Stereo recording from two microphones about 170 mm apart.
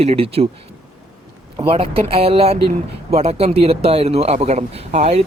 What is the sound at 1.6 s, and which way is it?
A man's voice, 30° right (ahead or behind).